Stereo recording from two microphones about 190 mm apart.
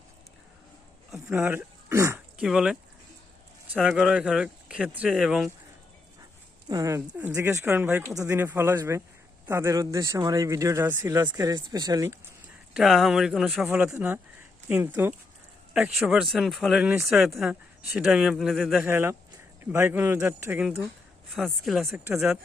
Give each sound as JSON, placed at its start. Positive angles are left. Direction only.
{"t": 1.1, "sound": "speech", "side_deg": -5}
{"t": 2.4, "sound": "speech", "side_deg": 0}
{"t": 6.7, "sound": "speech", "side_deg": -20}
{"t": 12.7, "sound": "speech", "side_deg": 0}
{"t": 18.9, "sound": "speech", "side_deg": -10}